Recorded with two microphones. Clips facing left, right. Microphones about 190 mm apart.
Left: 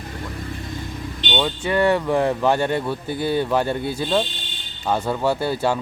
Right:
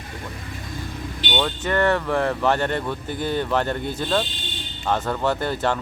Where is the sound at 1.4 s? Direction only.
10° left (ahead or behind).